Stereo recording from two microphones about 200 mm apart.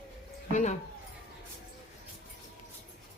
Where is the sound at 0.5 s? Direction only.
35° left (ahead or behind).